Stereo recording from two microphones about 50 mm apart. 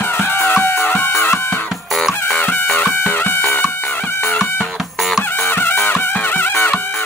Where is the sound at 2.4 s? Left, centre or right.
Left.